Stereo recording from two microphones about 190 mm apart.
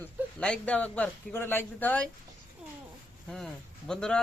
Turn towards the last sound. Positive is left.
turn(degrees=5)  # may be behind; listen again after turning